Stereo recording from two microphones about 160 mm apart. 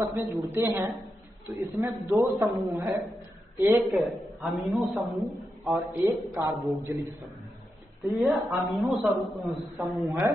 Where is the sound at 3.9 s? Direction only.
Centre (ahead or behind).